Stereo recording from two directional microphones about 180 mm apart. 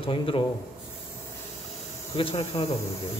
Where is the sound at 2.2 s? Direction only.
30° left (ahead or behind).